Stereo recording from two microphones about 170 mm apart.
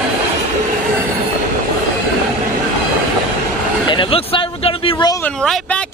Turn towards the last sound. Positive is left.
turn(degrees=5)  # may be behind; listen again after turning